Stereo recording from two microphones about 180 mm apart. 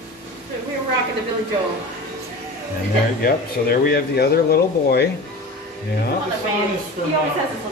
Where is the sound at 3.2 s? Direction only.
55° left (ahead or behind).